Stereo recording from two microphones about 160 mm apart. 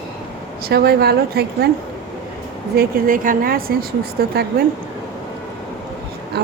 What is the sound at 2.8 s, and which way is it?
Speech, 60° right (ahead or behind).